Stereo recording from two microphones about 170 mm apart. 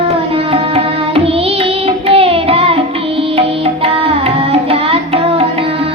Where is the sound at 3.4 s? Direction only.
35° right (ahead or behind).